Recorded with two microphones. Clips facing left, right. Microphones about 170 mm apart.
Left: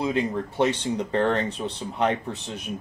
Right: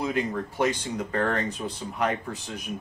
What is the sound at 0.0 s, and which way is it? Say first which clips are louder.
Speech: left 2 dB; 25° left (ahead or behind).